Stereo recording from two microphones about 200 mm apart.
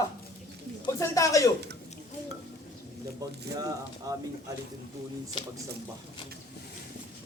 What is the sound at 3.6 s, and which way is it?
Speech, 15° right (ahead or behind).